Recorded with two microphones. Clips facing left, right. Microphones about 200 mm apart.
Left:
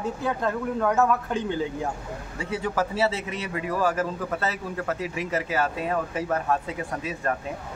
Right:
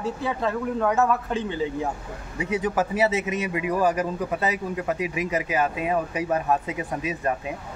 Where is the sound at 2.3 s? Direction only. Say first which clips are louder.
Right 3 dB; 20° right (ahead or behind).